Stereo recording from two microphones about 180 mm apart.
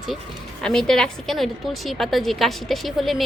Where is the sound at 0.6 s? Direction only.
5° left (ahead or behind).